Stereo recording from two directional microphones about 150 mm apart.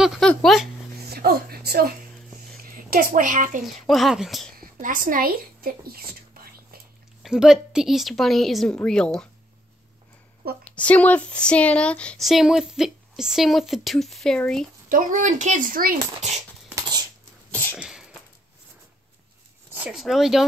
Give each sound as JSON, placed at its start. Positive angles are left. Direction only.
{"t": 0.0, "sound": "a sound", "side_deg": -5}
{"t": 0.3, "sound": "speech", "side_deg": 0}
{"t": 0.9, "sound": "a sound", "side_deg": -90}
{"t": 2.6, "sound": "a child's voice", "side_deg": -75}
{"t": 3.6, "sound": "speech", "side_deg": 0}
{"t": 4.6, "sound": "a sound", "side_deg": -65}
{"t": 7.2, "sound": "speech", "side_deg": -5}
{"t": 10.4, "sound": "a woman's voice", "side_deg": -90}
{"t": 10.8, "sound": "speech", "side_deg": 10}
{"t": 14.9, "sound": "speech", "side_deg": -65}
{"t": 17.5, "sound": "cough", "side_deg": 10}
{"t": 17.7, "sound": "sneeze", "side_deg": -5}
{"t": 19.7, "sound": "speech", "side_deg": -5}